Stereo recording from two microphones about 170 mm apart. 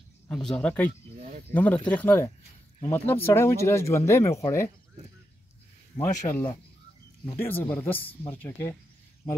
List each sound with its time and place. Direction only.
0.3 s speech: 5° left (ahead or behind)
5.9 s speech: 15° left (ahead or behind)